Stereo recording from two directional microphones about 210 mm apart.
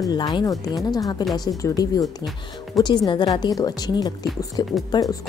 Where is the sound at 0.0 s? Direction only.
20° left (ahead or behind).